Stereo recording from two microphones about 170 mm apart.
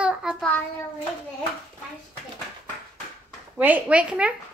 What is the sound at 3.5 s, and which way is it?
Speech, 10° right (ahead or behind).